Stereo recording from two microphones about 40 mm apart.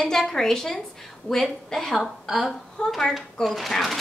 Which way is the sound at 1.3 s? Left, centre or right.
Centre.